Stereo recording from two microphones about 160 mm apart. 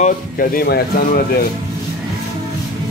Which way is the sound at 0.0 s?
65° left (ahead or behind).